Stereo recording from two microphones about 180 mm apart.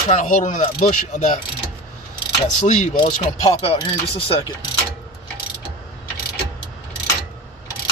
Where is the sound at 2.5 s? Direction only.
40° left (ahead or behind).